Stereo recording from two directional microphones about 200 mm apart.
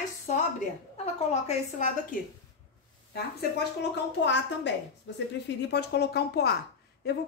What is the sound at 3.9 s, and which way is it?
Speech, 60° left (ahead or behind).